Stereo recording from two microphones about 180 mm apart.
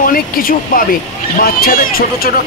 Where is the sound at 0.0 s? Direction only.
50° left (ahead or behind).